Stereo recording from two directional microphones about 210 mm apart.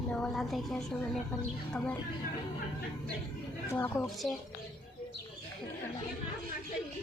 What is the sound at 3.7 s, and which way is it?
Speech, 10° left (ahead or behind).